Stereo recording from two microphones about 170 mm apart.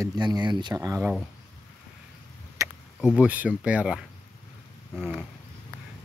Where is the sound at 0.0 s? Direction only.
25° right (ahead or behind).